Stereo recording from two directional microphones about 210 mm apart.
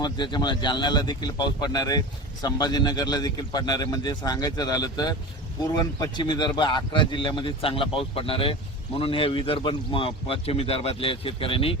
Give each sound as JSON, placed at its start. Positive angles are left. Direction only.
{"t": 0.0, "sound": "speech", "side_deg": 20}